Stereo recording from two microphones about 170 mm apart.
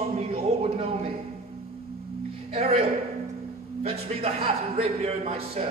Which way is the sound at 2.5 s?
40° right (ahead or behind).